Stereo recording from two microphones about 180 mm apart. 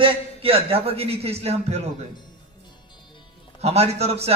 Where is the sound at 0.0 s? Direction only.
30° right (ahead or behind).